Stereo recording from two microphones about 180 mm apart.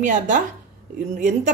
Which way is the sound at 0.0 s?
45° right (ahead or behind).